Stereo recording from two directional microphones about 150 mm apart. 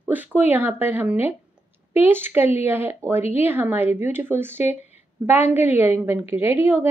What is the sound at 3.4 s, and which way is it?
A woman's voice, 15° right (ahead or behind).